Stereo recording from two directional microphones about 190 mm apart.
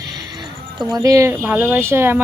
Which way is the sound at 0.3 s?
20° right (ahead or behind).